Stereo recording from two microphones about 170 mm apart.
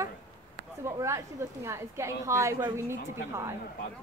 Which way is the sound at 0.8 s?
15° right (ahead or behind).